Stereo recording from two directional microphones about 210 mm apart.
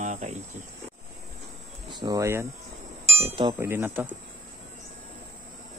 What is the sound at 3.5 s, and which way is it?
Speech, 10° right (ahead or behind).